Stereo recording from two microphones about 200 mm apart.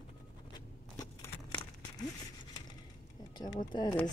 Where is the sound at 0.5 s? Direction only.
20° left (ahead or behind).